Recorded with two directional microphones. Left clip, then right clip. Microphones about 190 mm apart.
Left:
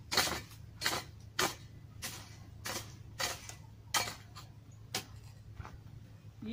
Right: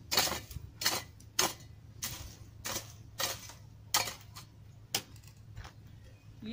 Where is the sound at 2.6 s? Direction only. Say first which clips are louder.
Right 2 dB; 30° right (ahead or behind).